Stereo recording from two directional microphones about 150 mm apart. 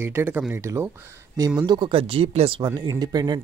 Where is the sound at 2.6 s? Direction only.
25° right (ahead or behind).